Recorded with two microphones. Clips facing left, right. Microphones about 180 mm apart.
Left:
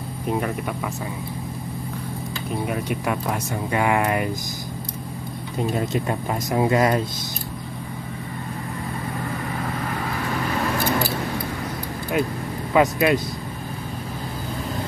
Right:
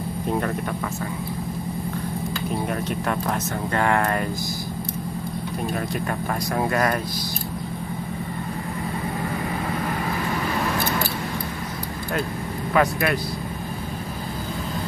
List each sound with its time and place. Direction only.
2.7 s speech: 10° left (ahead or behind)
5.6 s speech: 20° left (ahead or behind)
12.7 s speech: 20° left (ahead or behind)